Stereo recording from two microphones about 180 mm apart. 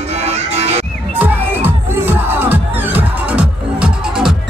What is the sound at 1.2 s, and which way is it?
Music, 10° right (ahead or behind).